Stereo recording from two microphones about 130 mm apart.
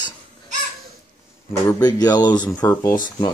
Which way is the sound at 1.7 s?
30° left (ahead or behind).